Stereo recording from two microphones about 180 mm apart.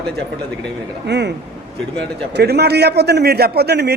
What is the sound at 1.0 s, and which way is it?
Speech, 70° right (ahead or behind).